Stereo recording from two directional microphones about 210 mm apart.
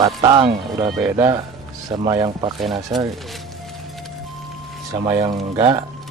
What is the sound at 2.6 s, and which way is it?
Speech, centre (ahead or behind).